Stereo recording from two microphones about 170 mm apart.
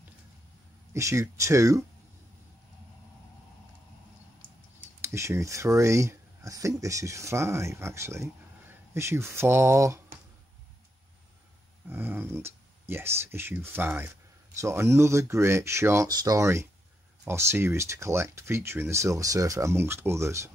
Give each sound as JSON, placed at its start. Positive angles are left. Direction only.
{"t": 0.9, "sound": "speech", "side_deg": -15}
{"t": 4.7, "sound": "speech", "side_deg": -15}
{"t": 11.9, "sound": "speech", "side_deg": -10}